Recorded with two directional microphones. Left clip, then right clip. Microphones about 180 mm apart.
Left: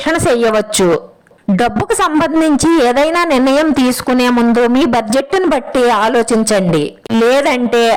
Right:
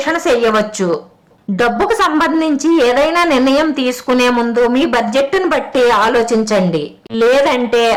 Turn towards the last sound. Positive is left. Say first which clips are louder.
# left 1 dB
turn(degrees=35)  # may be behind; listen again after turning